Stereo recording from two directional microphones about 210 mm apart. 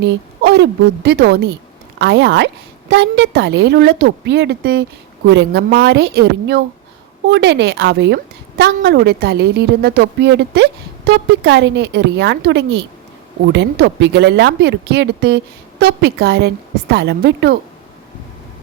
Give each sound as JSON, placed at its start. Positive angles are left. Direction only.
{"t": 0.0, "sound": "a woman's voice", "side_deg": -55}